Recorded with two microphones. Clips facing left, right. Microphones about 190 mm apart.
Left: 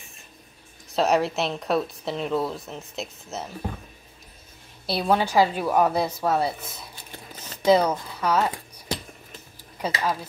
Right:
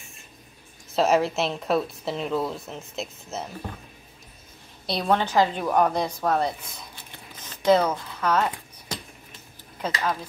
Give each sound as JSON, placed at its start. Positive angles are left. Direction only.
{"t": 0.9, "sound": "speech", "side_deg": 0}
{"t": 4.8, "sound": "a woman's voice", "side_deg": 5}
{"t": 9.8, "sound": "speech", "side_deg": 10}